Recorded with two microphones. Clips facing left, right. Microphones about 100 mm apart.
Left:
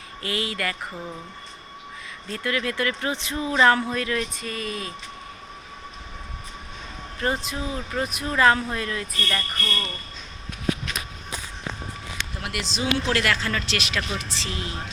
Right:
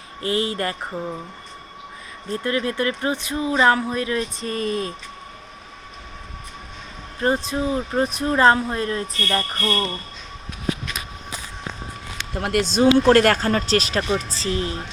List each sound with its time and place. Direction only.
0.2 s speech: 30° right (ahead or behind)
2.3 s speech: 30° right (ahead or behind)
4.4 s speech: 40° right (ahead or behind)
7.5 s speech: 30° right (ahead or behind)
12.4 s speech: 45° right (ahead or behind)